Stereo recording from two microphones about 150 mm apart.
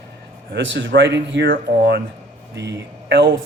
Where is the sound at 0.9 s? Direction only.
90° right.